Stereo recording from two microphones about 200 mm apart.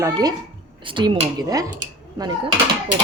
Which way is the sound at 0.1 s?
20° right (ahead or behind).